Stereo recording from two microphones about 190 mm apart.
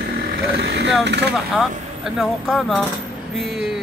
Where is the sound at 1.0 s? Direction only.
65° right (ahead or behind).